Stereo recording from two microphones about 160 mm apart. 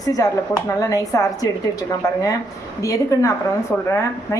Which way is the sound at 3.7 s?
5° left (ahead or behind).